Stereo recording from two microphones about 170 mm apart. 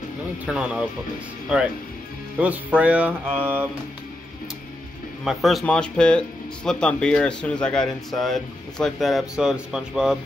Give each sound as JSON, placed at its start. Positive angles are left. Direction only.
{"t": 0.5, "sound": "speech", "side_deg": -5}
{"t": 2.3, "sound": "music", "side_deg": -10}
{"t": 5.2, "sound": "speech", "side_deg": 0}